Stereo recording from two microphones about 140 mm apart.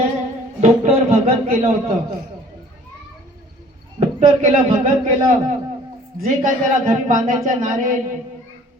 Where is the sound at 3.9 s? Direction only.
55° right (ahead or behind).